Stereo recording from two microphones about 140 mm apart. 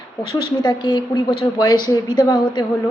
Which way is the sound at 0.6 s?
30° left (ahead or behind).